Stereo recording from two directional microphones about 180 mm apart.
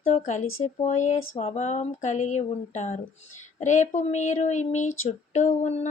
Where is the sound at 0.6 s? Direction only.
40° left (ahead or behind).